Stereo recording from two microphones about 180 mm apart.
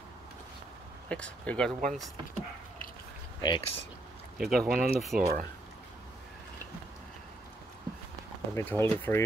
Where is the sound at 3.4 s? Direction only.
25° left (ahead or behind).